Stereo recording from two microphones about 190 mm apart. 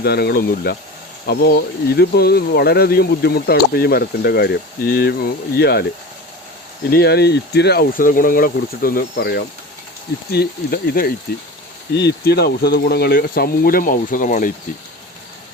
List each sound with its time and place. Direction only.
0.0 s speech: 55° left (ahead or behind)
6.9 s speech: 55° left (ahead or behind)